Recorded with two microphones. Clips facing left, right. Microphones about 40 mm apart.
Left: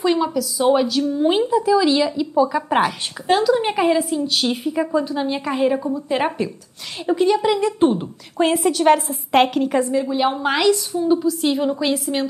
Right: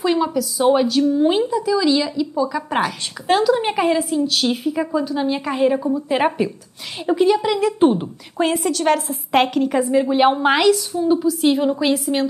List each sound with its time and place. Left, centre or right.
0.0 s a woman's voice: centre
1.5 s a woman's voice: centre
3.3 s a woman's voice: centre
10.0 s a woman's voice: right
10.3 s a woman's voice: centre
10.7 s a woman's voice: centre